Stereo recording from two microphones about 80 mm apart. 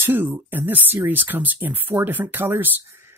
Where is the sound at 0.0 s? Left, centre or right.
Right.